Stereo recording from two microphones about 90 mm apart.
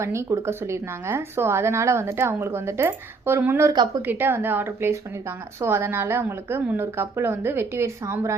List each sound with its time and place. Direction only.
0.0 s speech: 30° right (ahead or behind)
3.7 s a woman's voice: 45° right (ahead or behind)
4.0 s speech: 20° right (ahead or behind)